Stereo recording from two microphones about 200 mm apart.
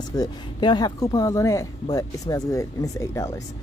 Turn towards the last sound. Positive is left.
turn(degrees=15)  # may be behind; listen again after turning